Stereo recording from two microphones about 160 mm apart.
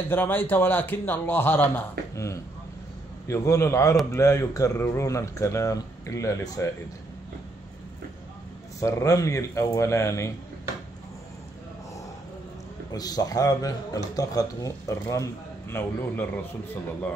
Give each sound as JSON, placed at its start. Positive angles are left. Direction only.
{"t": 0.1, "sound": "a man's voice", "side_deg": 15}
{"t": 8.8, "sound": "speech", "side_deg": 20}
{"t": 12.9, "sound": "a man's voice", "side_deg": 25}